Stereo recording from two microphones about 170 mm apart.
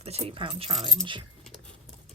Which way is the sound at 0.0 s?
35° right (ahead or behind).